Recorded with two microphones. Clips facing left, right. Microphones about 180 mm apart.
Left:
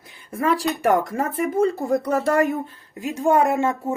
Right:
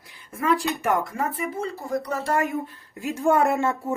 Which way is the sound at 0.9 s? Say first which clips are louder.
Left 5 dB; 45° left (ahead or behind).